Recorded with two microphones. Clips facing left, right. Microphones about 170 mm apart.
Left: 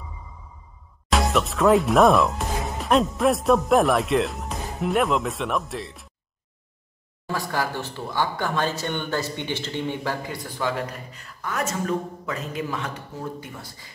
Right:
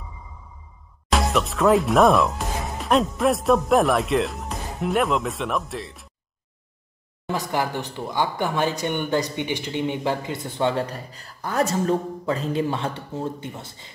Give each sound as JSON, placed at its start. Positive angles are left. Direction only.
{"t": 1.1, "sound": "speech", "side_deg": 0}
{"t": 7.2, "sound": "speech", "side_deg": -20}